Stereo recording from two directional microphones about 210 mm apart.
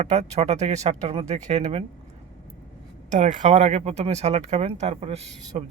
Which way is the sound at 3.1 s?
35° right (ahead or behind).